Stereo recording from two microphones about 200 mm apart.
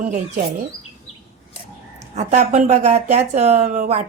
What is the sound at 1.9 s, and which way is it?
Speech, 35° right (ahead or behind).